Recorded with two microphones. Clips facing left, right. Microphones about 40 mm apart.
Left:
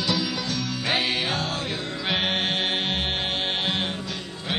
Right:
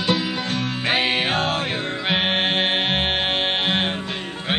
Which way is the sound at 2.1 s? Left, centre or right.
Right.